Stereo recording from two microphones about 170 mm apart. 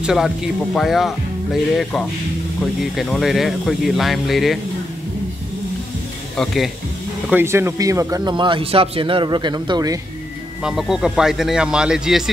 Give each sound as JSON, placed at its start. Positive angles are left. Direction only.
{"t": 0.0, "sound": "speech", "side_deg": -5}
{"t": 6.3, "sound": "speech", "side_deg": 0}
{"t": 7.2, "sound": "a man's voice", "side_deg": -15}
{"t": 10.6, "sound": "speech", "side_deg": -5}